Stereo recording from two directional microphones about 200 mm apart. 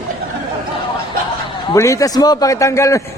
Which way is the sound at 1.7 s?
15° left (ahead or behind).